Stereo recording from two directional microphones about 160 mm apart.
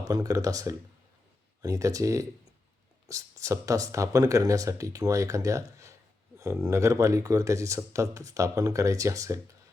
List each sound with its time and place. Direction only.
0.0 s speech: 20° right (ahead or behind)